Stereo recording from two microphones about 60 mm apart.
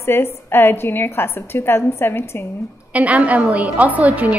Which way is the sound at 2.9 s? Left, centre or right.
Right.